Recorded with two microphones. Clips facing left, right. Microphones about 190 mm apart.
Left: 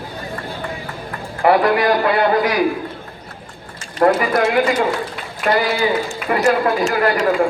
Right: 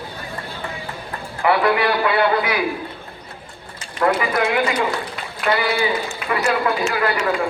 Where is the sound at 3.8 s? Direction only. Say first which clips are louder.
Left 4 dB; 40° left (ahead or behind).